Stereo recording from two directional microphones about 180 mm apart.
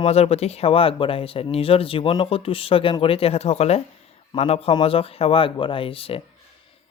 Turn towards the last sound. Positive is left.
turn(degrees=30)  # may be behind; listen again after turning